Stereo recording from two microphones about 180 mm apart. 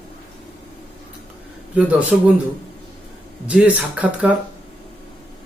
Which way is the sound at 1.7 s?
10° right (ahead or behind).